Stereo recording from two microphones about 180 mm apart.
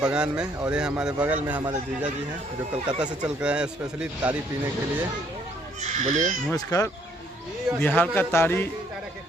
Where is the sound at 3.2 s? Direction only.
5° right (ahead or behind).